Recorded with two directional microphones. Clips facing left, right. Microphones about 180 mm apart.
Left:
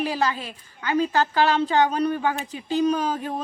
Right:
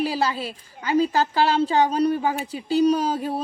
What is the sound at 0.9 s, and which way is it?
Speech, 35° right (ahead or behind).